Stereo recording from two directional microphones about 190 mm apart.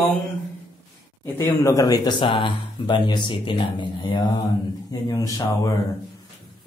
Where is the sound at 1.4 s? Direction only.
15° left (ahead or behind).